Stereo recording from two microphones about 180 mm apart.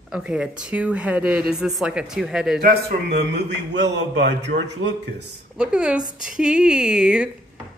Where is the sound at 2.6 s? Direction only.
65° right (ahead or behind).